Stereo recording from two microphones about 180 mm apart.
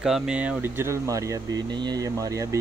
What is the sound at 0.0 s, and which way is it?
Speech, 5° right (ahead or behind).